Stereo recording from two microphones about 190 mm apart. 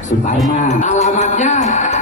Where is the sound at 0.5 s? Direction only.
40° left (ahead or behind).